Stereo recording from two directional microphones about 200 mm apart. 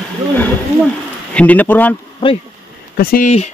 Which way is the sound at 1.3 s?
5° left (ahead or behind).